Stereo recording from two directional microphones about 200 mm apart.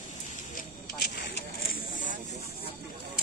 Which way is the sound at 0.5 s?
50° left (ahead or behind).